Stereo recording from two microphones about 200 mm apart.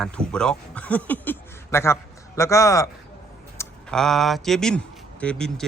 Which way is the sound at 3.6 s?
5° left (ahead or behind).